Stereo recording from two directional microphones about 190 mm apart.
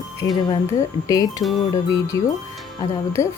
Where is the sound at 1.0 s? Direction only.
20° left (ahead or behind).